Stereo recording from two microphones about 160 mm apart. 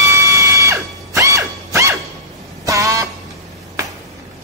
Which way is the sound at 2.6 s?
20° right (ahead or behind).